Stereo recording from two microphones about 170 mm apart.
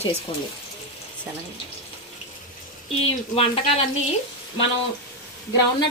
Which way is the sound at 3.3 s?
35° left (ahead or behind).